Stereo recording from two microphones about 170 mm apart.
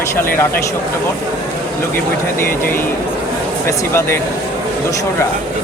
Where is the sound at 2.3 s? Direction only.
15° left (ahead or behind).